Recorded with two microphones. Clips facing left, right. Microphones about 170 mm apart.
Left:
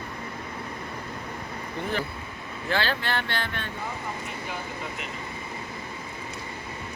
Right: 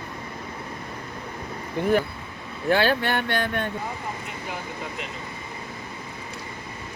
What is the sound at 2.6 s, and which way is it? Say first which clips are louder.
Speech: right 7 dB; 55° right (ahead or behind).